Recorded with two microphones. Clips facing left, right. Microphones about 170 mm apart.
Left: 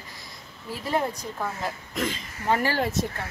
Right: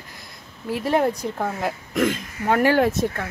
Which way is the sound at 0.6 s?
65° right (ahead or behind).